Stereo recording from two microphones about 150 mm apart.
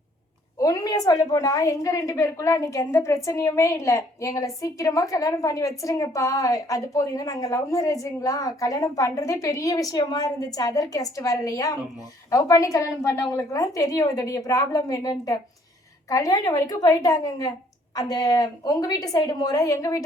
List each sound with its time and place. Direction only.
0.6 s a woman's voice: 25° left (ahead or behind)